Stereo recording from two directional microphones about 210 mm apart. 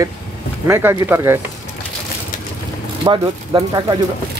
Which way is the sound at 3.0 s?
20° right (ahead or behind).